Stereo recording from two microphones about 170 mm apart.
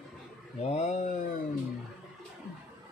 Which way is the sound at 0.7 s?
40° left (ahead or behind).